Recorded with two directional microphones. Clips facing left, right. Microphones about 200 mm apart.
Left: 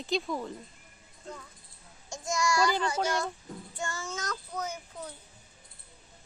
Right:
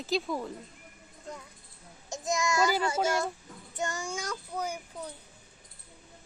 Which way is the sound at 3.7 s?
20° right (ahead or behind).